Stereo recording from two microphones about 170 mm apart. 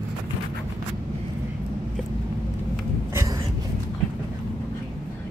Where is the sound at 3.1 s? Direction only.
20° right (ahead or behind).